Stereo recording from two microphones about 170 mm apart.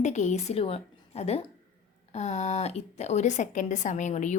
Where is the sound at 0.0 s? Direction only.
45° left (ahead or behind).